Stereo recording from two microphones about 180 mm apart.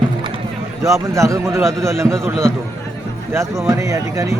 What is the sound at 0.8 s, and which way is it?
A man's voice, 15° right (ahead or behind).